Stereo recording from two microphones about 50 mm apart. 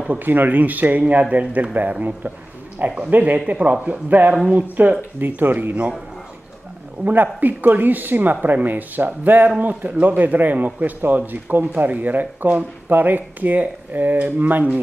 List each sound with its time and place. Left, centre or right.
0.1 s a man's voice: right
7.1 s a man's voice: right